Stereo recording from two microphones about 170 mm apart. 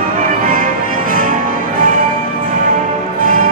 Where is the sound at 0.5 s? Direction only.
55° right (ahead or behind).